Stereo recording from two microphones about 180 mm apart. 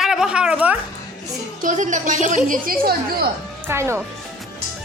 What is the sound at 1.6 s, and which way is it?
A woman's voice, 45° right (ahead or behind).